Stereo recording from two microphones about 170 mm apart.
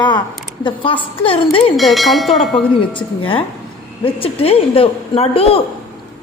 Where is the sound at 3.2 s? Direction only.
30° left (ahead or behind).